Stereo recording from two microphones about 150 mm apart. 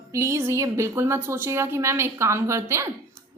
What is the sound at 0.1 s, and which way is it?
A woman's voice, 20° right (ahead or behind).